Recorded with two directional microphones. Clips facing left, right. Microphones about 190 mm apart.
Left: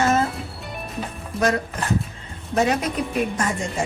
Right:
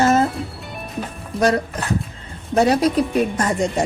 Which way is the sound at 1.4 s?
35° right (ahead or behind).